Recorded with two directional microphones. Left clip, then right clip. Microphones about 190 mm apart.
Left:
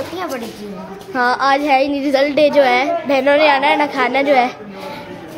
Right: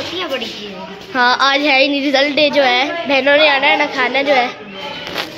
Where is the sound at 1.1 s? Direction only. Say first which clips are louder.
Right 2 dB; 10° left (ahead or behind).